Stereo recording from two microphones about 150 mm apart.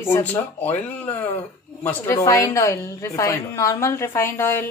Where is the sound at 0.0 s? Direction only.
15° left (ahead or behind).